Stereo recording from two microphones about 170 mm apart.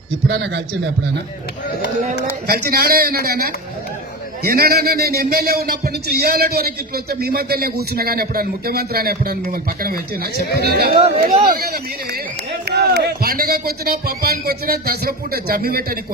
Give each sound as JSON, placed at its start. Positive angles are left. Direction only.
{"t": 0.3, "sound": "a man's voice", "side_deg": -90}
{"t": 2.5, "sound": "a man's voice", "side_deg": -65}
{"t": 11.2, "sound": "speech", "side_deg": -35}
{"t": 11.5, "sound": "a man's voice", "side_deg": -65}